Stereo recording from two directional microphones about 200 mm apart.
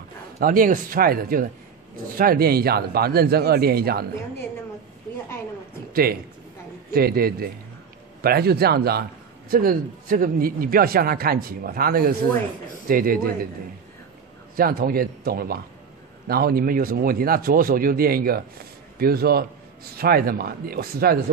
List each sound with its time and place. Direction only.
0.4 s speech: 45° right (ahead or behind)
6.9 s speech: 50° right (ahead or behind)
14.5 s speech: 50° right (ahead or behind)